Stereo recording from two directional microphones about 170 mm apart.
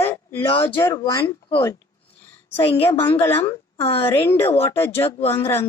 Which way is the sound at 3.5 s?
35° left (ahead or behind).